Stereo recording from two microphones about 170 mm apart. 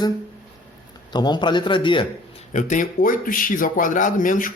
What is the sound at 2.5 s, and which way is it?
Speech, 50° left (ahead or behind).